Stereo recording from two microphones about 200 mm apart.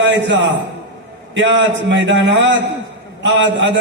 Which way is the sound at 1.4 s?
65° right (ahead or behind).